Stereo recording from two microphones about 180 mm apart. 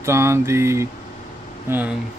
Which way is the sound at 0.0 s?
15° right (ahead or behind).